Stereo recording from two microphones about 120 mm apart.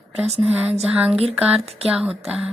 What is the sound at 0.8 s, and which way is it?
Speech, 5° right (ahead or behind).